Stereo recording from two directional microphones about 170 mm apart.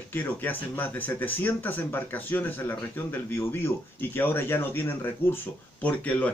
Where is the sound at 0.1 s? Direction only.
10° left (ahead or behind).